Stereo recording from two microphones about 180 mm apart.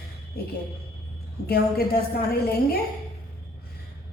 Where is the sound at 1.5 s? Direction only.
60° left (ahead or behind).